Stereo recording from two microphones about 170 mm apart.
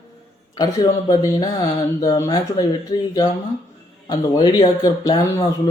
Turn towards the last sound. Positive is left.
turn(degrees=20)  # may be behind; listen again after turning